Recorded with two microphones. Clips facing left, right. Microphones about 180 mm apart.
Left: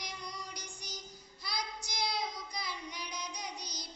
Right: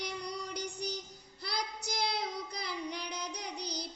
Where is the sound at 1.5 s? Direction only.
65° right (ahead or behind).